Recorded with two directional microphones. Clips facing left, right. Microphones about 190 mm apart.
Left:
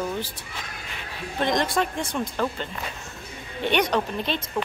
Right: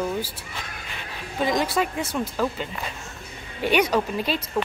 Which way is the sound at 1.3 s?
5° right (ahead or behind).